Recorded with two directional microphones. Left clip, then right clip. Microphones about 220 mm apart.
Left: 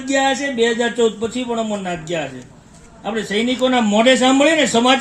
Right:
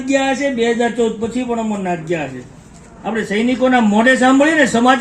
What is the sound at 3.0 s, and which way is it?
A man's voice, 30° left (ahead or behind).